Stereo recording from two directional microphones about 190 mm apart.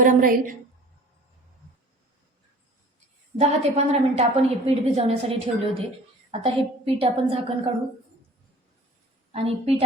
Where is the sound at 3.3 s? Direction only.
35° right (ahead or behind).